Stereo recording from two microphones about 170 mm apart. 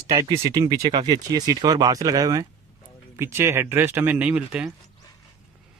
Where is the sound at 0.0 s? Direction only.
20° right (ahead or behind); by 4.7 s 5° right (ahead or behind).